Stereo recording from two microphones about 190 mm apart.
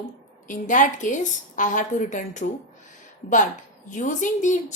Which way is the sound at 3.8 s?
40° left (ahead or behind).